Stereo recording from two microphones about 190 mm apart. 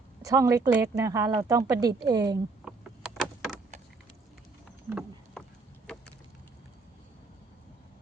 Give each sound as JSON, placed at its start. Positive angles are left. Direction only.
{"t": 0.2, "sound": "speech", "side_deg": -20}
{"t": 2.6, "sound": "door", "side_deg": -5}
{"t": 4.9, "sound": "rowboat", "side_deg": -5}